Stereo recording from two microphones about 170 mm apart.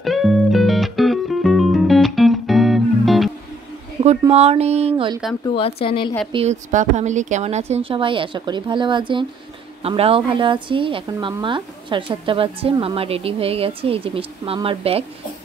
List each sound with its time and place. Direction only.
0.0 s music: centre (ahead or behind)
4.3 s speech: 40° right (ahead or behind)
5.5 s speech: 35° left (ahead or behind)
6.3 s speech: 40° right (ahead or behind)